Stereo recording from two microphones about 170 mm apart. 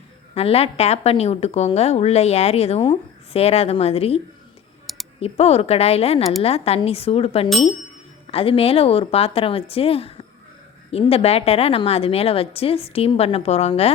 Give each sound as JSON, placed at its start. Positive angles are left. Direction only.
{"t": 0.3, "sound": "a woman's voice", "side_deg": 35}
{"t": 4.9, "sound": "a sound", "side_deg": 0}
{"t": 5.2, "sound": "a woman's voice", "side_deg": 35}